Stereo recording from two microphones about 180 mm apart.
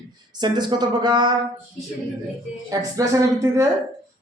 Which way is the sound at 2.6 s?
20° right (ahead or behind).